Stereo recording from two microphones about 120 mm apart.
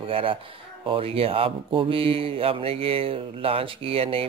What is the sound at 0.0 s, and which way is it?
Speech, 50° right (ahead or behind).